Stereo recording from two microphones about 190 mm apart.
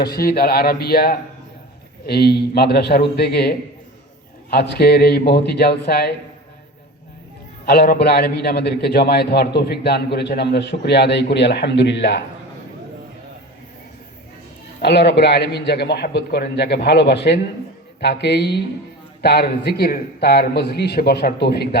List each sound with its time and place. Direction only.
0.0 s a man's voice: 55° left (ahead or behind)
7.6 s a man's voice: 55° left (ahead or behind)
14.8 s a man's voice: 60° left (ahead or behind)